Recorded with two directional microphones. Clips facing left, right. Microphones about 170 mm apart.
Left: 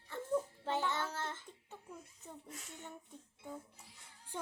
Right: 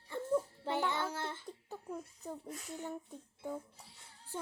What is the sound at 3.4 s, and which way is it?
Speech, 35° right (ahead or behind).